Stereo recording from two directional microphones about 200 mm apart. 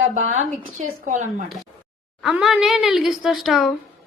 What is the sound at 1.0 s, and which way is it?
Speech, 40° right (ahead or behind).